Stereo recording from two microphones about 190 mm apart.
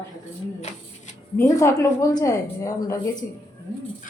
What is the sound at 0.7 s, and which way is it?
Speech, 40° left (ahead or behind).